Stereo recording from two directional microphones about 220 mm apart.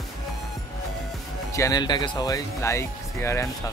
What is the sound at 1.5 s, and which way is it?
Speech, 15° left (ahead or behind).